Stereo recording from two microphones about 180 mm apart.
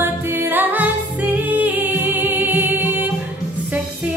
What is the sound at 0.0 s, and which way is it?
Music, 10° right (ahead or behind).